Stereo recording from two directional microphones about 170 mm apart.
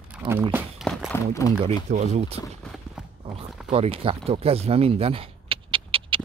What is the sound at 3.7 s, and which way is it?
Speech, 35° right (ahead or behind).